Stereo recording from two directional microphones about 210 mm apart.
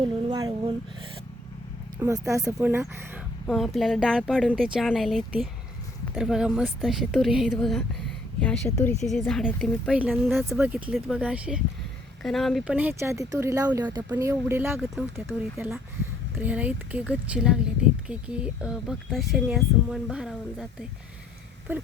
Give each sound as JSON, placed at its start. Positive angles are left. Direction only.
{"t": 0.0, "sound": "a sound", "side_deg": -20}
{"t": 2.0, "sound": "speech", "side_deg": -15}
{"t": 3.4, "sound": "a woman's voice", "side_deg": 0}
{"t": 9.0, "sound": "speech", "side_deg": 0}